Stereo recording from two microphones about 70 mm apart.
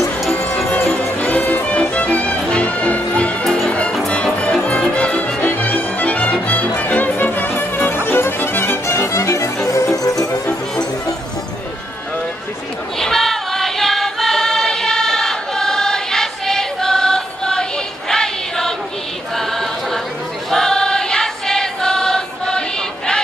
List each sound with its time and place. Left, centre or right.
0.3 s music: left
0.7 s music: left
5.4 s music: left
13.0 s choir: centre